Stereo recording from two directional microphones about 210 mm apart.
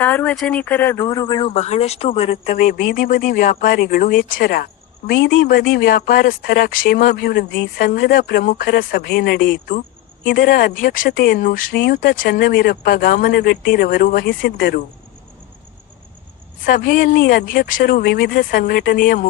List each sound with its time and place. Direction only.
0.0 s speech: 10° left (ahead or behind)
1.5 s speech: 30° left (ahead or behind); by 14.8 s 50° left (ahead or behind)
16.6 s speech: 40° left (ahead or behind)